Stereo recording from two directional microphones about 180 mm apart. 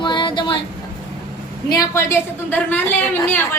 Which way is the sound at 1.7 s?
20° left (ahead or behind).